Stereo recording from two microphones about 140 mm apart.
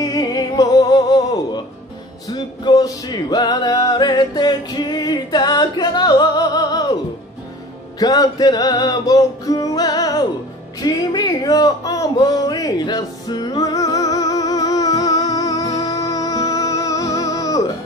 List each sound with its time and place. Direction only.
0.0 s music: 25° left (ahead or behind)
8.0 s male singing: 30° left (ahead or behind)
10.8 s a sound: 30° left (ahead or behind)